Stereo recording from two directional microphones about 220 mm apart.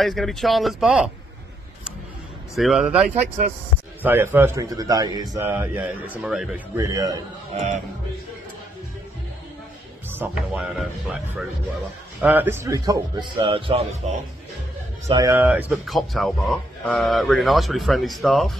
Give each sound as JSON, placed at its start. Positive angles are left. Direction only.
{"t": 0.0, "sound": "speech", "side_deg": 0}
{"t": 2.5, "sound": "a man's voice", "side_deg": 0}
{"t": 7.5, "sound": "music", "side_deg": -30}
{"t": 10.1, "sound": "speech", "side_deg": -5}
{"t": 12.2, "sound": "a man's voice", "side_deg": -10}
{"t": 15.1, "sound": "speech", "side_deg": -10}